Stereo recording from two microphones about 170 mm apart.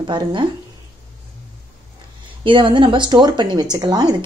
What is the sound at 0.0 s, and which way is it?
Speech, 30° right (ahead or behind).